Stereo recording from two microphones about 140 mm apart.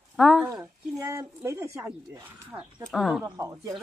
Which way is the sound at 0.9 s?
20° right (ahead or behind).